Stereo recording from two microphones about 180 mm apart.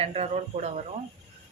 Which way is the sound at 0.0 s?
35° right (ahead or behind).